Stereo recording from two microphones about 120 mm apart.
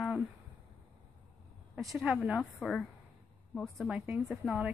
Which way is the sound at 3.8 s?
10° right (ahead or behind).